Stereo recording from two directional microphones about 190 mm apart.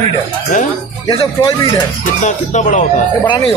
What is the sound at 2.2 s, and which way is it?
Speech, 40° left (ahead or behind).